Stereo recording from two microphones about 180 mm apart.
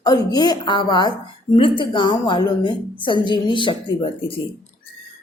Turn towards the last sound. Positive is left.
turn(degrees=30)  # may be behind; listen again after turning